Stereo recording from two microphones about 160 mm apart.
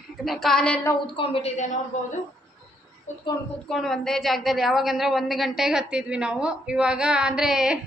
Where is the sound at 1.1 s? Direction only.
35° left (ahead or behind).